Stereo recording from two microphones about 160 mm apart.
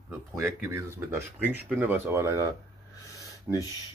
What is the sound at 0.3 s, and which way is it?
Speech, 20° right (ahead or behind).